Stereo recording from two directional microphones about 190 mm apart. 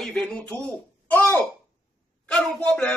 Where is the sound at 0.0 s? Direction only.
5° left (ahead or behind).